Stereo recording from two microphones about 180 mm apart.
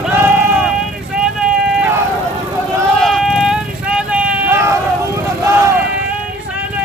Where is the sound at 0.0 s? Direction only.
10° right (ahead or behind).